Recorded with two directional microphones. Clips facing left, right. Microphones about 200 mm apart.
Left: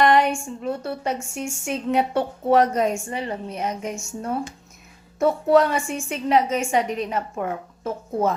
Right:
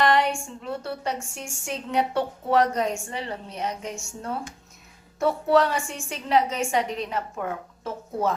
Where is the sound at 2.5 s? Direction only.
20° left (ahead or behind).